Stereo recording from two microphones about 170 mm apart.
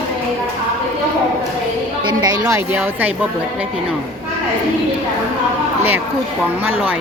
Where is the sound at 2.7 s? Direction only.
10° right (ahead or behind).